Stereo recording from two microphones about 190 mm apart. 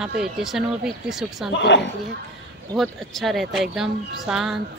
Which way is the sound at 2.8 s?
Centre (ahead or behind).